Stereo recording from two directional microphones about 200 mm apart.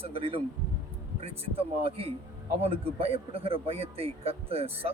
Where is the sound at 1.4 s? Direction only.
30° right (ahead or behind).